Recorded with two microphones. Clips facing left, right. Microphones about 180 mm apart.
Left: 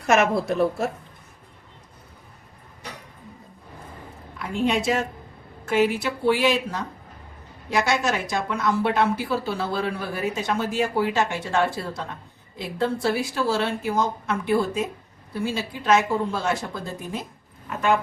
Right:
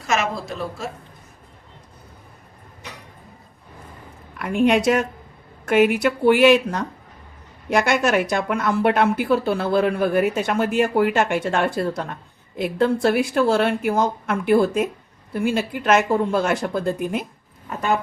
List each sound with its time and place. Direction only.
0.0 s a woman's voice: 60° left (ahead or behind)
4.4 s a woman's voice: 60° right (ahead or behind)
6.0 s a woman's voice: 55° right (ahead or behind)